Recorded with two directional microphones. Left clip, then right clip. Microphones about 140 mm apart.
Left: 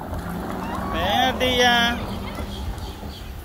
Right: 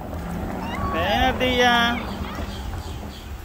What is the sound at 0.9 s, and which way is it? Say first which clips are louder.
Speech: even; 35° right (ahead or behind).